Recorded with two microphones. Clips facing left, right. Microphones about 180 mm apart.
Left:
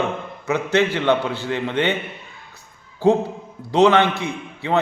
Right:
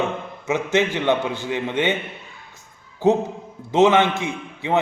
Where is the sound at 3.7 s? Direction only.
20° right (ahead or behind).